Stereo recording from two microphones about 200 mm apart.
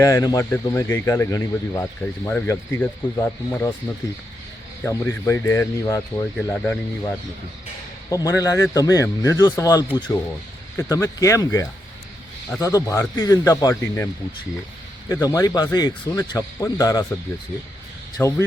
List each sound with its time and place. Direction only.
0.0 s speech: 15° left (ahead or behind)
4.8 s speech: 15° left (ahead or behind)
6.3 s speech: 5° left (ahead or behind)
8.1 s speech: 15° left (ahead or behind)
15.1 s speech: 15° left (ahead or behind)
18.2 s speech: 15° left (ahead or behind)